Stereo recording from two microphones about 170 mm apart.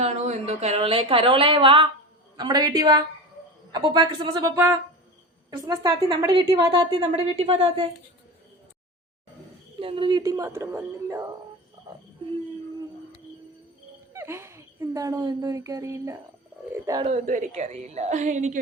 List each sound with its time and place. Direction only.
0.0 s a woman's voice: 40° right (ahead or behind)
9.8 s a woman's voice: 30° right (ahead or behind)
14.1 s a woman's voice: 15° right (ahead or behind)
17.0 s a woman's voice: 40° right (ahead or behind)